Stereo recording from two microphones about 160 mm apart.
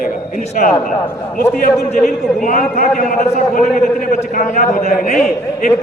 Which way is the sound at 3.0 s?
50° left (ahead or behind).